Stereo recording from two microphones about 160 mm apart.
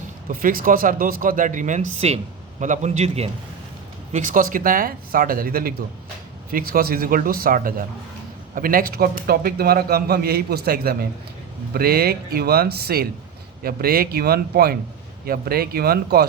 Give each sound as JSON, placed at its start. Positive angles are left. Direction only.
{"t": 0.3, "sound": "a man's voice", "side_deg": -60}